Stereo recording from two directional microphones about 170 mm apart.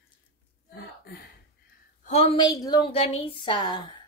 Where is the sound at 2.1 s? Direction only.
35° left (ahead or behind).